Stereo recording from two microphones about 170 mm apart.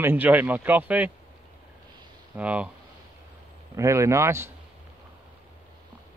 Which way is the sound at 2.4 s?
10° right (ahead or behind).